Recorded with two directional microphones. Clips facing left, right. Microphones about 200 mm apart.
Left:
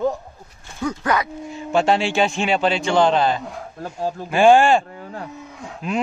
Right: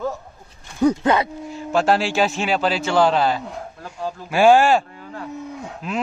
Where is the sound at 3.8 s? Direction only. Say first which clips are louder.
Left 5 dB; 45° left (ahead or behind).